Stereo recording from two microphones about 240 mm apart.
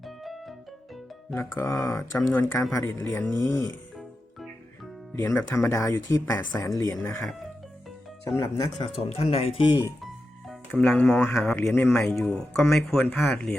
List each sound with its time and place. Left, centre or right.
0.0 s keyboard: centre
1.3 s speech: centre
5.1 s speech: centre
8.4 s speech: centre
10.5 s speech: centre